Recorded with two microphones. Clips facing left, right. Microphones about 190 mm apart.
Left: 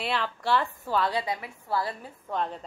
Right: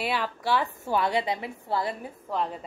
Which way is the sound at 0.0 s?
5° right (ahead or behind).